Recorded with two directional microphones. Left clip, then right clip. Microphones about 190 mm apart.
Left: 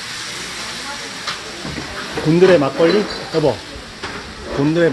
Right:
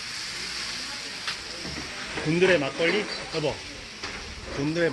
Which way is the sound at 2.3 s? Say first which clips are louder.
Left 10 dB; 20° left (ahead or behind).